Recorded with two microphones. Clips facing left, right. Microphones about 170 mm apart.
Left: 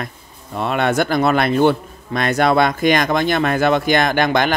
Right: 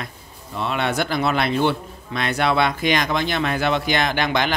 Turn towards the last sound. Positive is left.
turn(degrees=50)  # may be behind; listen again after turning